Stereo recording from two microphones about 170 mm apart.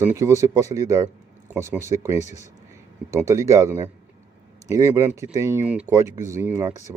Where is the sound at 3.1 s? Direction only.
15° right (ahead or behind).